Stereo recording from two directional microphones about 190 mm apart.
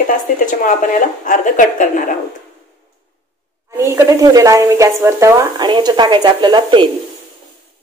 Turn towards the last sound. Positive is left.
turn(degrees=-25)  # may be behind; listen again after turning